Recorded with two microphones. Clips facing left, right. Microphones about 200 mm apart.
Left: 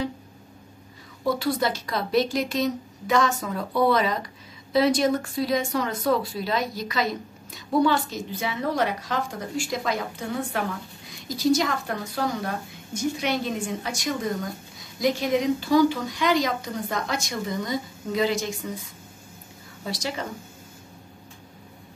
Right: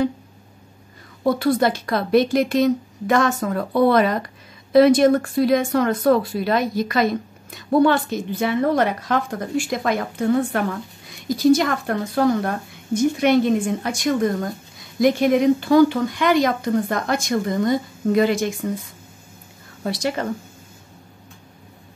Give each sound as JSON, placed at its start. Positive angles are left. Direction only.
{"t": 1.2, "sound": "a woman's voice", "side_deg": -55}
{"t": 19.8, "sound": "a woman's voice", "side_deg": -55}